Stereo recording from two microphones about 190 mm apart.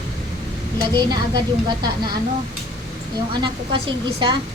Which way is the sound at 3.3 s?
25° right (ahead or behind).